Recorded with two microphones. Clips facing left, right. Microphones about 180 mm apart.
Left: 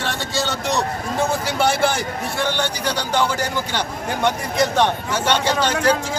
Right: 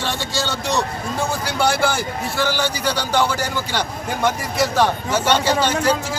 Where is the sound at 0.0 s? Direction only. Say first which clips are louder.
Even; centre (ahead or behind).